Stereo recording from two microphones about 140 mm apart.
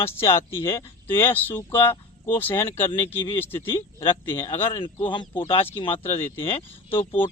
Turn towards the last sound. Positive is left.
turn(degrees=40)  # may be behind; listen again after turning